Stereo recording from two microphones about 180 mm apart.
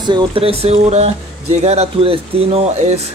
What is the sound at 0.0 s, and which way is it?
Speech, 25° right (ahead or behind).